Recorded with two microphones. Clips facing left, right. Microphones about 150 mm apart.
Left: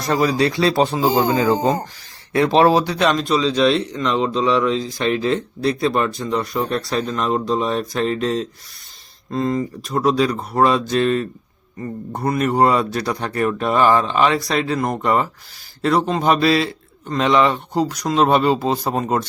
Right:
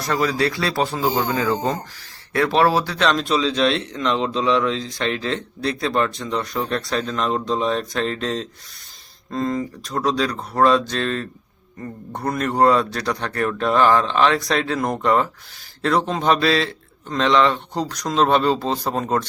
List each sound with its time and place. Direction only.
0.1 s speech: 20° left (ahead or behind)
3.2 s speech: centre (ahead or behind)